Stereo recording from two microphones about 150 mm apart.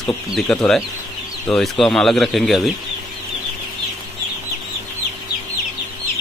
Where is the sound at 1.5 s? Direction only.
Centre (ahead or behind).